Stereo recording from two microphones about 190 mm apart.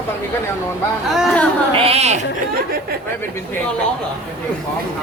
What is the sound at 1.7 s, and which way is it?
Speech, 30° right (ahead or behind).